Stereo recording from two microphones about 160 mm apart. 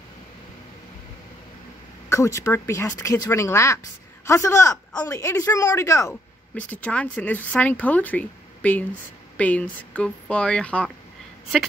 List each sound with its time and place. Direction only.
2.0 s speech: 20° left (ahead or behind)